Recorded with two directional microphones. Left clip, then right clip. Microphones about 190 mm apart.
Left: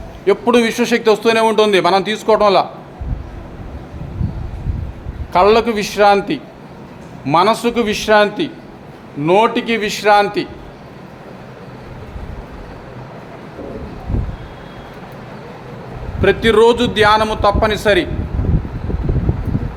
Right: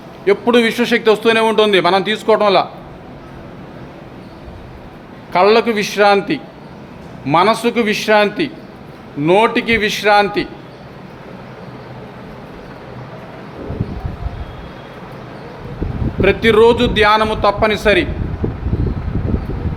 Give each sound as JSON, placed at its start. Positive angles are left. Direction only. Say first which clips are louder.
{"t": 0.3, "sound": "a man's voice", "louder": "even", "side_deg": 5}
{"t": 5.3, "sound": "a man's voice", "louder": "even", "side_deg": 5}
{"t": 16.2, "sound": "a man's voice", "louder": "even", "side_deg": 0}